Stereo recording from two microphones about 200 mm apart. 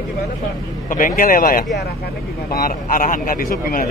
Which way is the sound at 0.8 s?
45° left (ahead or behind).